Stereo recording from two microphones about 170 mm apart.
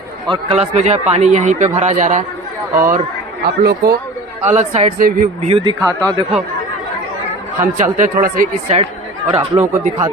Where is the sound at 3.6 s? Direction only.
70° right (ahead or behind).